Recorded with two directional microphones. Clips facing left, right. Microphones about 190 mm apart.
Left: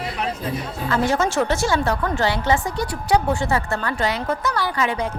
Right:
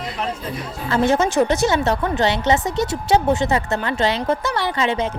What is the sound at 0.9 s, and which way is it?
A woman's voice, 20° right (ahead or behind).